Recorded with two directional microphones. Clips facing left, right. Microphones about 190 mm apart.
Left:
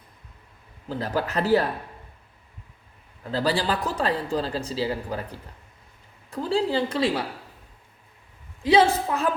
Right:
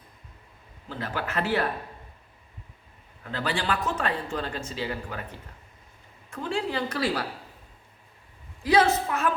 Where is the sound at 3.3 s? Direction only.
35° left (ahead or behind).